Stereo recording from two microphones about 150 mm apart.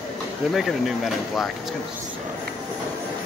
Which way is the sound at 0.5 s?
Centre (ahead or behind).